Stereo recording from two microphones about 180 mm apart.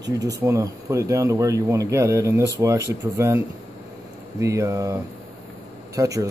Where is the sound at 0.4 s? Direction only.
15° right (ahead or behind).